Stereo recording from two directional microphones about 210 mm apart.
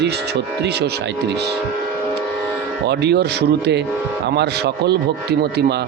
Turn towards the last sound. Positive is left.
turn(degrees=-50)  # may be behind; listen again after turning